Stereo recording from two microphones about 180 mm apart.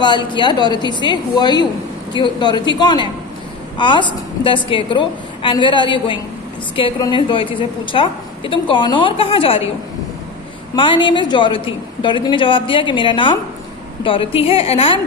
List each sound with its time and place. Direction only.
0.0 s a woman's voice: 25° left (ahead or behind)
10.8 s a woman's voice: 25° left (ahead or behind)